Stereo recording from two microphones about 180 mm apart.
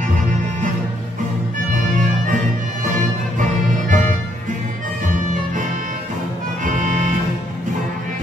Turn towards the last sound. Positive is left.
turn(degrees=-45)  # may be behind; listen again after turning